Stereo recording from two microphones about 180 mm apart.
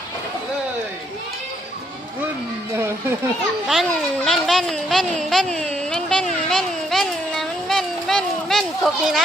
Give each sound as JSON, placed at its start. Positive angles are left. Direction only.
{"t": 3.7, "sound": "speech", "side_deg": 0}